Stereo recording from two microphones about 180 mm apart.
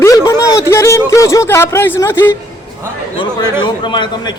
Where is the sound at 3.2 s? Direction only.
25° left (ahead or behind).